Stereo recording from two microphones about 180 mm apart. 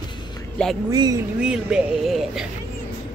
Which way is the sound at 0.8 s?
20° right (ahead or behind).